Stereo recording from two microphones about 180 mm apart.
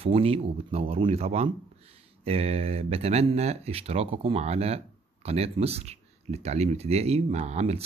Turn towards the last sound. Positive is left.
turn(degrees=-35)  # may be behind; listen again after turning